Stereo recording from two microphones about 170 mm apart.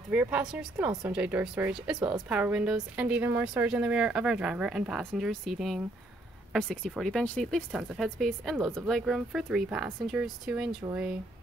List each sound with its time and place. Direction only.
0.1 s speech: 10° right (ahead or behind)
2.0 s a woman's voice: 25° right (ahead or behind)
2.2 s a woman's voice: 5° right (ahead or behind)